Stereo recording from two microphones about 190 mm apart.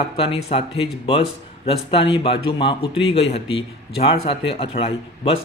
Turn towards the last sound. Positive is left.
turn(degrees=30)  # may be behind; listen again after turning